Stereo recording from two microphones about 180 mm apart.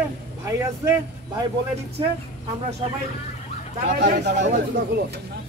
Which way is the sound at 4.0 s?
60° right (ahead or behind).